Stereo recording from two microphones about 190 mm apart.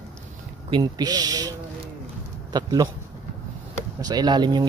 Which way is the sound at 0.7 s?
20° right (ahead or behind).